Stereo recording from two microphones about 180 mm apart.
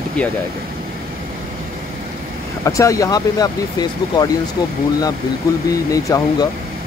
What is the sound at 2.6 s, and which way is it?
Speech, 15° left (ahead or behind).